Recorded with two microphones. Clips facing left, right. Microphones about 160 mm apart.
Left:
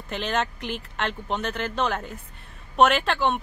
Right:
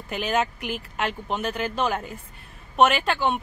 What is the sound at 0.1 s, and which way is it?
Speech, 5° right (ahead or behind).